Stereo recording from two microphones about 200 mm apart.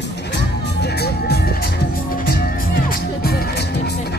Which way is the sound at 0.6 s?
55° left (ahead or behind).